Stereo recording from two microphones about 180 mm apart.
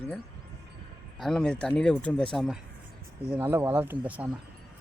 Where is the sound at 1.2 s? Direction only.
5° left (ahead or behind).